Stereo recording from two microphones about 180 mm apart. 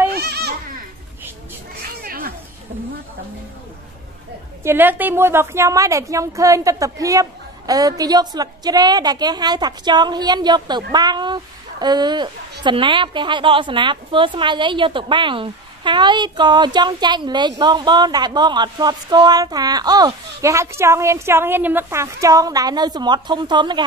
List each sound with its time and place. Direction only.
0.1 s a sound: 60° right (ahead or behind)
2.0 s children playing: 55° right (ahead or behind)
4.6 s a woman's voice: 10° right (ahead or behind)